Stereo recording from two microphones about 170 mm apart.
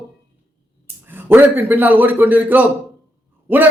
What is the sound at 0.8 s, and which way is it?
A man's voice, 10° right (ahead or behind).